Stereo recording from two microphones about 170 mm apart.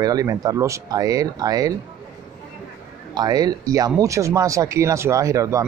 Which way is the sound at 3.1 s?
25° right (ahead or behind).